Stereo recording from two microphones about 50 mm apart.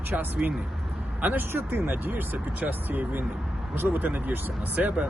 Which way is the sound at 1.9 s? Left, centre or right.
Right.